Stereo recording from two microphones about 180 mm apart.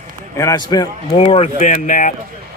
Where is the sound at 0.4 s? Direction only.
20° left (ahead or behind).